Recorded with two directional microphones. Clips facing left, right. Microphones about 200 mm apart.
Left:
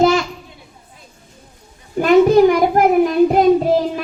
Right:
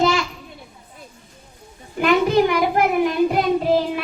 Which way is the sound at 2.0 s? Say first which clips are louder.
Left 6 dB; 40° left (ahead or behind).